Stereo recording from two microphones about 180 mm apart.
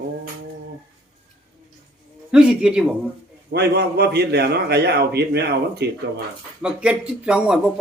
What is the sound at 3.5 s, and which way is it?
A man's voice, 65° right (ahead or behind).